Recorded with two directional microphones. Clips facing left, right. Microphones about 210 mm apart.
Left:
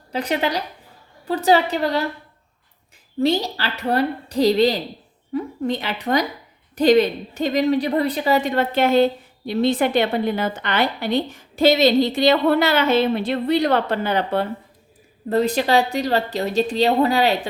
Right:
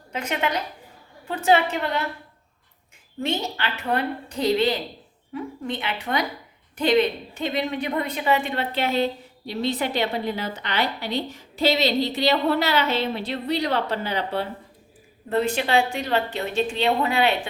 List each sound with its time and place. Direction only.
0.1 s a woman's voice: 35° left (ahead or behind)
3.2 s a woman's voice: 35° left (ahead or behind); by 14.4 s 50° left (ahead or behind)
15.3 s a woman's voice: 40° left (ahead or behind)